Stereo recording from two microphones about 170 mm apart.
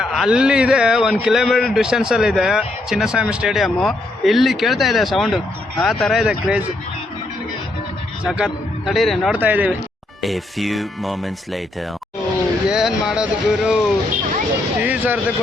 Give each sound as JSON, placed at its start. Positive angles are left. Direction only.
{"t": 0.0, "sound": "speech", "side_deg": -5}
{"t": 8.2, "sound": "speech", "side_deg": -5}
{"t": 12.6, "sound": "speech", "side_deg": -5}